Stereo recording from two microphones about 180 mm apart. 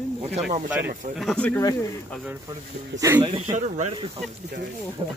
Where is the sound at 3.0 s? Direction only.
15° right (ahead or behind).